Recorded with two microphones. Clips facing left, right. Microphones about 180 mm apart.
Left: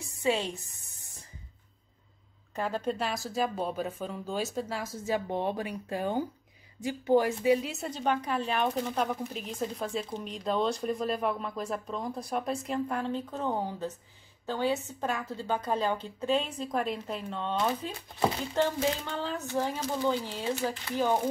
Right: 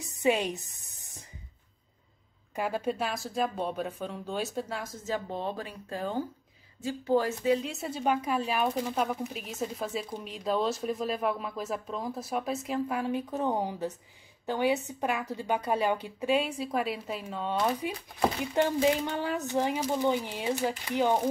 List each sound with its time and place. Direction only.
0.2 s a woman's voice: 15° right (ahead or behind)
2.5 s a woman's voice: 10° right (ahead or behind)
5.0 s a woman's voice: 15° left (ahead or behind); by 21.2 s 15° right (ahead or behind)